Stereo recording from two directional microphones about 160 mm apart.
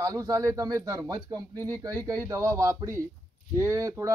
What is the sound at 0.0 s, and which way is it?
Speech, 20° right (ahead or behind).